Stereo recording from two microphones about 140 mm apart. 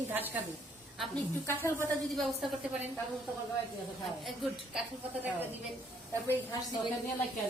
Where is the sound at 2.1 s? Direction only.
Centre (ahead or behind).